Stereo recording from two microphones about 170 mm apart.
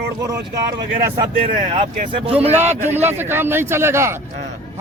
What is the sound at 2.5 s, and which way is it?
A man's voice, 10° right (ahead or behind).